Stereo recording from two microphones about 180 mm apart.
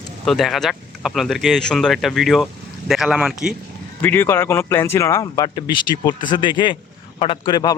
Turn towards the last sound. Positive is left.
turn(degrees=20)  # may be behind; listen again after turning